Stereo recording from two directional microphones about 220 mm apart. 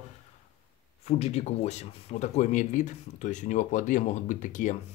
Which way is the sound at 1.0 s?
30° left (ahead or behind).